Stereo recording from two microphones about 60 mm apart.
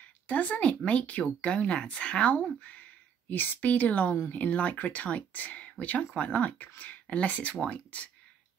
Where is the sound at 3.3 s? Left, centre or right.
Left.